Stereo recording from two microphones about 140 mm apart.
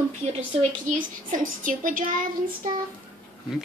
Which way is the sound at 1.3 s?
75° right (ahead or behind).